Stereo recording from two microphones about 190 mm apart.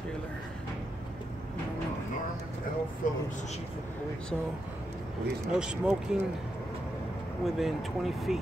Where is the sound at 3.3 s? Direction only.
40° left (ahead or behind).